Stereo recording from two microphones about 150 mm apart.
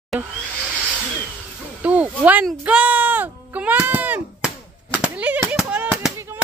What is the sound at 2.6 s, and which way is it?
Chop, 10° right (ahead or behind).